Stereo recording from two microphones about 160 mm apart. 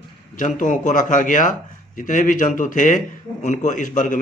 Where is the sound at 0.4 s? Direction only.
55° left (ahead or behind).